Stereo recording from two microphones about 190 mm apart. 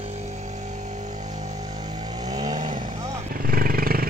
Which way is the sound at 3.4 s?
50° right (ahead or behind).